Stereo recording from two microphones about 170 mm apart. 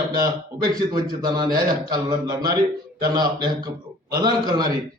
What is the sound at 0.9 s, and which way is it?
A man's voice, 25° right (ahead or behind).